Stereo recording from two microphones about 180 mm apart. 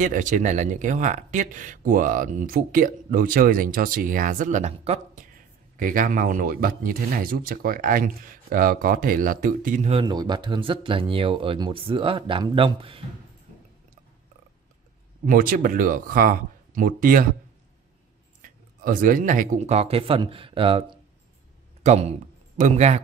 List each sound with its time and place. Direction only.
0.0 s speech: 45° right (ahead or behind)
10.0 s speech: 25° right (ahead or behind)
15.2 s speech: 50° right (ahead or behind)
18.4 s speech: 50° right (ahead or behind)